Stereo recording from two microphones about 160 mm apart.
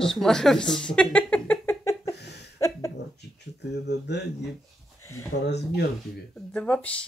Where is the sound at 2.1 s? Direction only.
90° left.